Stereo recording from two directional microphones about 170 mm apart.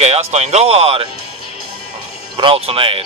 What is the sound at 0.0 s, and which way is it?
Speech, 40° right (ahead or behind).